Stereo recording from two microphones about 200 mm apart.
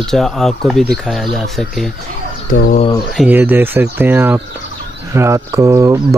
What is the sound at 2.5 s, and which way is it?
Speech, 50° left (ahead or behind).